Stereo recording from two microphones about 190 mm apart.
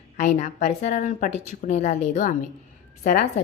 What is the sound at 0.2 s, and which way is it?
A woman's voice, 40° left (ahead or behind).